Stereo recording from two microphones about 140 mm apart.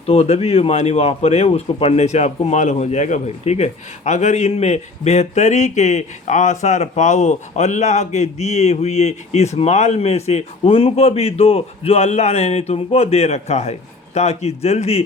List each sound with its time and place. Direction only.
0.1 s speech: 45° left (ahead or behind)